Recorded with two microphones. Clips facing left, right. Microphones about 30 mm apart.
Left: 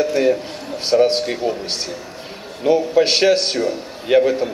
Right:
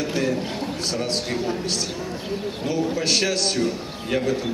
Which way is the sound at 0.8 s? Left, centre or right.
Left.